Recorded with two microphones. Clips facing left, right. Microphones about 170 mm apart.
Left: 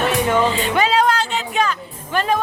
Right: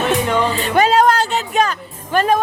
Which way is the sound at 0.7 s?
45° right (ahead or behind).